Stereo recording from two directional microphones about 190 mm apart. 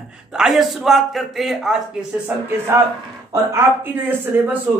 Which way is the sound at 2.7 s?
15° right (ahead or behind).